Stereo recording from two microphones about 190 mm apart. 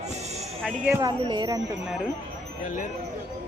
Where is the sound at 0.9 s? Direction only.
20° right (ahead or behind).